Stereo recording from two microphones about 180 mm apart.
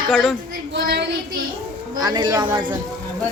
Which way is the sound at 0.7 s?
65° right (ahead or behind).